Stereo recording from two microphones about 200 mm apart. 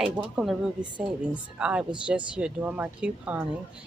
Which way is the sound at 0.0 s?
5° right (ahead or behind).